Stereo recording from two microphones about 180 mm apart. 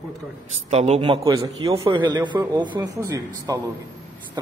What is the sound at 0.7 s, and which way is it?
A man's voice, 35° right (ahead or behind).